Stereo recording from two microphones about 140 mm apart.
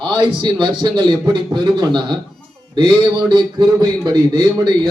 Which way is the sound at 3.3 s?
35° right (ahead or behind).